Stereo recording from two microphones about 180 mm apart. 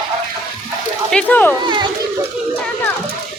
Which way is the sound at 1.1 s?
10° left (ahead or behind).